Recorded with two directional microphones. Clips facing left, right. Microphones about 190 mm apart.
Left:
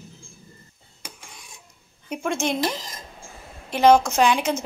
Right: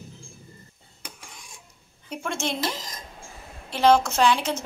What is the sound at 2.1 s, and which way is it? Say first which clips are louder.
Speech: left 4 dB; 15° left (ahead or behind).